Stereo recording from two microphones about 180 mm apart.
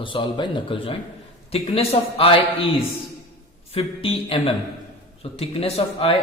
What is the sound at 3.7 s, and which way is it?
Speech, 30° left (ahead or behind).